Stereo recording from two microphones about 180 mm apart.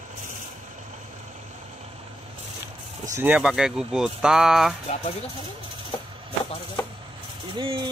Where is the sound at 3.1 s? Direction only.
10° right (ahead or behind).